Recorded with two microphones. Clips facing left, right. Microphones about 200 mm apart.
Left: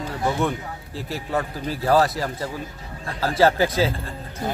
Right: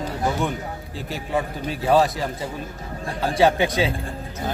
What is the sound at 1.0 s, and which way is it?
A man's voice, centre (ahead or behind).